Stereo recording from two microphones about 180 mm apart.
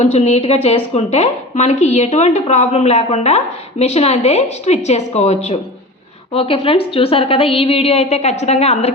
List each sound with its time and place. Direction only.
0.0 s a woman's voice: 40° left (ahead or behind)